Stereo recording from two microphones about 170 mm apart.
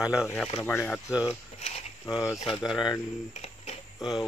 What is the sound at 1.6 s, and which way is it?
Speech, 40° left (ahead or behind).